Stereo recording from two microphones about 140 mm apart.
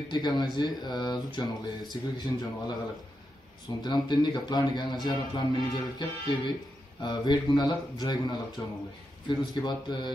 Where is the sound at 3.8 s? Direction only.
30° left (ahead or behind).